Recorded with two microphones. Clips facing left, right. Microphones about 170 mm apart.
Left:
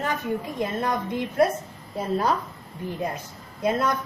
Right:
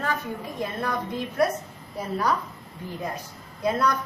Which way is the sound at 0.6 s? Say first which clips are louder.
Even; 20° left (ahead or behind).